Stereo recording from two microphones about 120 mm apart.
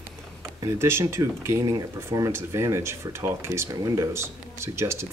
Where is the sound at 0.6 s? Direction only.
25° right (ahead or behind).